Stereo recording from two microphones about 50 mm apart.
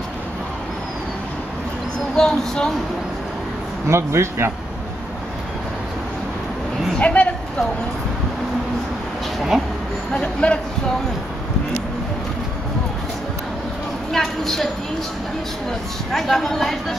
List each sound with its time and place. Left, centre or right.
2.1 s a woman's voice: centre
3.9 s speech: right
7.0 s a sound: left
9.5 s speech: centre
10.1 s speech: left
14.1 s a woman's voice: centre
16.1 s speech: centre